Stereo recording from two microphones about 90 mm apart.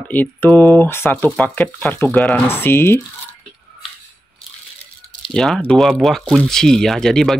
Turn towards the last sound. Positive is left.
turn(degrees=5)  # may be behind; listen again after turning